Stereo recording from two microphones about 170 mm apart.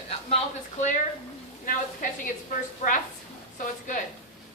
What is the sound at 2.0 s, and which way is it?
Speech, 50° left (ahead or behind).